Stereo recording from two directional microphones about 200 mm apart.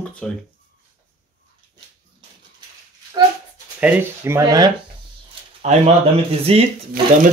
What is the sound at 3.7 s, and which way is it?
Speech, 10° right (ahead or behind).